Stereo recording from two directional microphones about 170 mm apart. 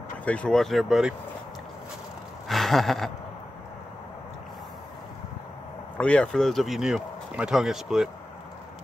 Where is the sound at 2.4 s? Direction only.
Centre (ahead or behind).